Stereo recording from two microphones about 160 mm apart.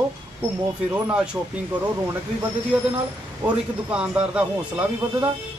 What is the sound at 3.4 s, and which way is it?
Speech, 10° right (ahead or behind).